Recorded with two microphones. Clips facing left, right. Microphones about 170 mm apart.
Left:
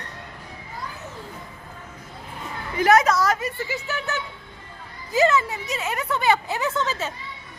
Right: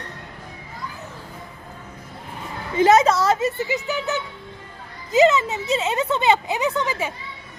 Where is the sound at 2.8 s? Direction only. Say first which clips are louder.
Right 3 dB; 25° right (ahead or behind).